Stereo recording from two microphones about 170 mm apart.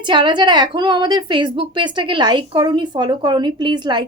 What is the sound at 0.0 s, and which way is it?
A woman's voice, 30° right (ahead or behind).